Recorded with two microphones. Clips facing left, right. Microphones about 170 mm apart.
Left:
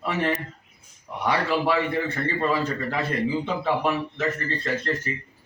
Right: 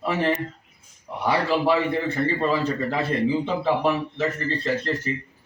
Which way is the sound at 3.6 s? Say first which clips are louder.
Right 2 dB; 20° right (ahead or behind).